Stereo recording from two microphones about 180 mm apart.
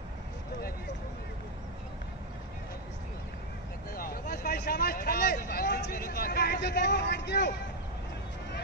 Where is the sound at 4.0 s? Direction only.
55° left (ahead or behind).